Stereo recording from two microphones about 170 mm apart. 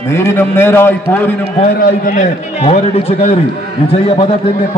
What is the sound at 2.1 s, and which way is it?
A man's voice, 40° left (ahead or behind).